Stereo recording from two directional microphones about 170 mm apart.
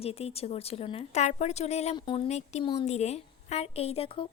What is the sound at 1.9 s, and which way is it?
Speech, 30° left (ahead or behind).